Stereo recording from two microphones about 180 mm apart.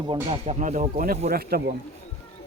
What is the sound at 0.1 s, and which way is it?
Speech, 35° right (ahead or behind).